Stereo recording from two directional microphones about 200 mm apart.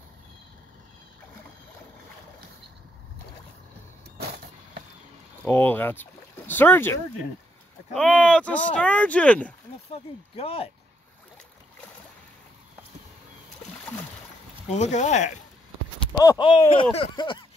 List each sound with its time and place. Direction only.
5.4 s speech: 10° left (ahead or behind)
9.8 s speech: 30° left (ahead or behind)
14.7 s speech: 35° left (ahead or behind)
16.1 s speech: 20° left (ahead or behind)